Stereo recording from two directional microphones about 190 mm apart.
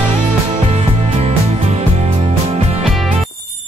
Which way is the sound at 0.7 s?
35° right (ahead or behind).